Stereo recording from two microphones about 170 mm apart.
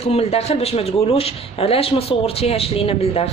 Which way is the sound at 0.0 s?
35° left (ahead or behind).